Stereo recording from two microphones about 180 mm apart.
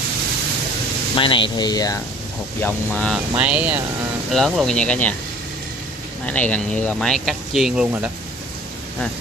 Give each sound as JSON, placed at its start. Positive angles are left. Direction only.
{"t": 1.1, "sound": "speech", "side_deg": 30}
{"t": 2.6, "sound": "speech", "side_deg": 5}
{"t": 3.3, "sound": "speech", "side_deg": -10}
{"t": 4.3, "sound": "speech", "side_deg": 0}
{"t": 6.2, "sound": "speech", "side_deg": 10}